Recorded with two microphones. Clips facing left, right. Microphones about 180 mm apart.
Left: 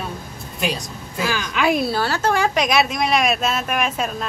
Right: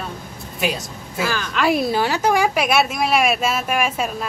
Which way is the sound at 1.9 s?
15° right (ahead or behind).